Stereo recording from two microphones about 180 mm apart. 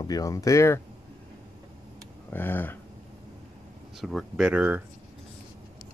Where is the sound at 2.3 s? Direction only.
10° left (ahead or behind).